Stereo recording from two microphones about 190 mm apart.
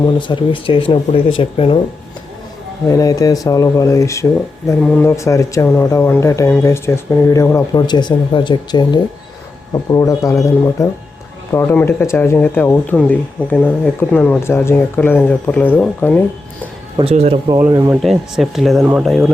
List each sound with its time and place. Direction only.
0.0 s speech: 25° left (ahead or behind)
2.9 s speech: 20° left (ahead or behind)
17.0 s speech: 35° right (ahead or behind)
17.5 s speech: 15° right (ahead or behind)
18.0 s speech: centre (ahead or behind)